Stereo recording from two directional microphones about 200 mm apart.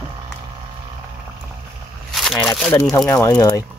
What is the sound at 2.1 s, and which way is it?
Speech, centre (ahead or behind).